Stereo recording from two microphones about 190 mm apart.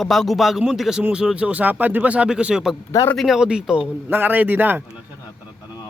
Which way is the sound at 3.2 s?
Centre (ahead or behind).